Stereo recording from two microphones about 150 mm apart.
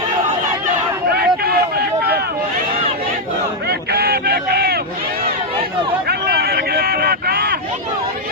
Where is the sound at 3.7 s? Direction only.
90° right.